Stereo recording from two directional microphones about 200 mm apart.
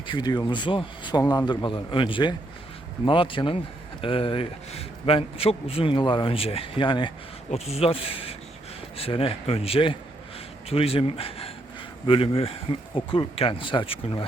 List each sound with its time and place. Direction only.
0.1 s a man's voice: 20° left (ahead or behind)